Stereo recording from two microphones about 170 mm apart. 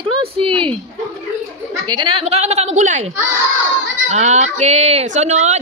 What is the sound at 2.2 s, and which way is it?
Speech, 40° right (ahead or behind).